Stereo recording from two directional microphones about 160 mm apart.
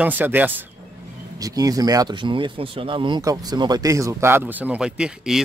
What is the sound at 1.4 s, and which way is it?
Speech, 20° right (ahead or behind).